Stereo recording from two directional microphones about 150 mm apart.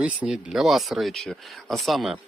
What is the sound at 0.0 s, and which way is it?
Speech, 5° right (ahead or behind).